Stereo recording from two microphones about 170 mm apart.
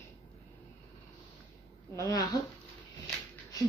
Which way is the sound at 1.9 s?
20° left (ahead or behind).